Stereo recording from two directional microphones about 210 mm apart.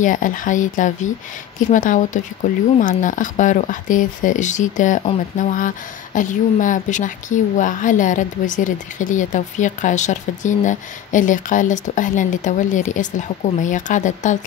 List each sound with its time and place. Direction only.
0.0 s a woman's voice: 40° left (ahead or behind)